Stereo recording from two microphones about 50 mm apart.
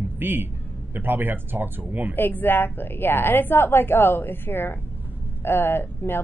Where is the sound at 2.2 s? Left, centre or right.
Left.